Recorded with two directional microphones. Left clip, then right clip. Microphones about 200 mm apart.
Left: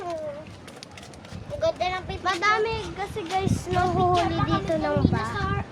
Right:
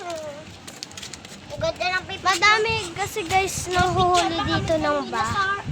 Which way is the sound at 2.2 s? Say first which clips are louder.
Right 4 dB; 30° right (ahead or behind).